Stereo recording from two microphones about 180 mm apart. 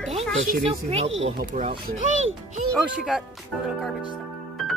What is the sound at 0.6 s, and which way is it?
Speech, 35° right (ahead or behind).